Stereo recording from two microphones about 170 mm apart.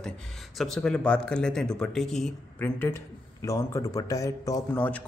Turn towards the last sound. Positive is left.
turn(degrees=20)  # may be behind; listen again after turning